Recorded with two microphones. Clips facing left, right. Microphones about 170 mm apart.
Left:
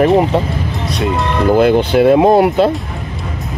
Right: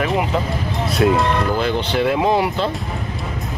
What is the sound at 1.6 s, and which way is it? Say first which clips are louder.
Speech: left 9 dB; 55° left (ahead or behind).